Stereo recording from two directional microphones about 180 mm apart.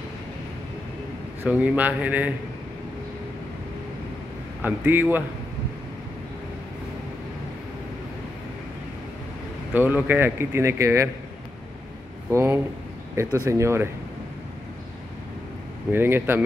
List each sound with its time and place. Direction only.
1.4 s speech: 10° right (ahead or behind)
4.6 s speech: 10° right (ahead or behind)
9.8 s speech: 10° right (ahead or behind)
12.3 s speech: 15° right (ahead or behind)
15.9 s speech: 10° right (ahead or behind)